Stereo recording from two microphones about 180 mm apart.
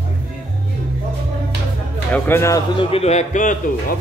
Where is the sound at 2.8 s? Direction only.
35° left (ahead or behind).